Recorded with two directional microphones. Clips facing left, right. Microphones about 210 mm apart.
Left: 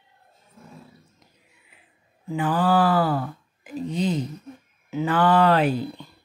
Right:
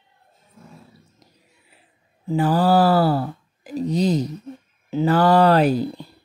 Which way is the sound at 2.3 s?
40° right (ahead or behind).